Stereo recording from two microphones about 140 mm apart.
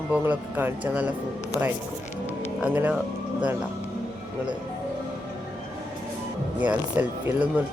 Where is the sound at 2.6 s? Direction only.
10° right (ahead or behind).